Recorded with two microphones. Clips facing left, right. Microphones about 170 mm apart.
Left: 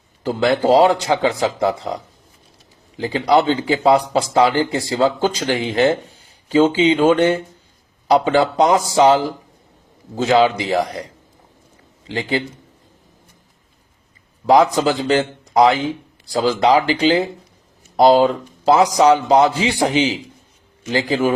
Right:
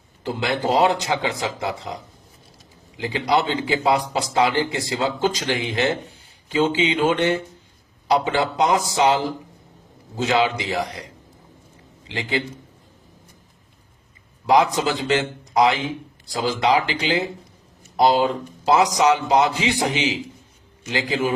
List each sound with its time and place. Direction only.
0.2 s speech: 40° left (ahead or behind)
3.0 s speech: 35° left (ahead or behind)
10.2 s speech: 35° left (ahead or behind)
12.0 s speech: 35° left (ahead or behind)
14.5 s speech: 35° left (ahead or behind)